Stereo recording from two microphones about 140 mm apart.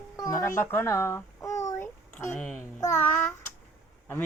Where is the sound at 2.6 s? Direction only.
15° left (ahead or behind).